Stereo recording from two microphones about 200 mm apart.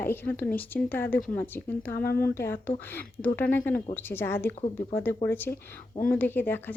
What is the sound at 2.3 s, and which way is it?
Speech, 10° left (ahead or behind).